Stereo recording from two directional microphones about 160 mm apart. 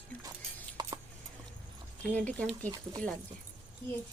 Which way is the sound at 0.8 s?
25° right (ahead or behind).